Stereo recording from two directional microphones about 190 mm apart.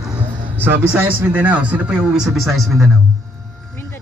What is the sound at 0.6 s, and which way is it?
A man's voice, 10° right (ahead or behind).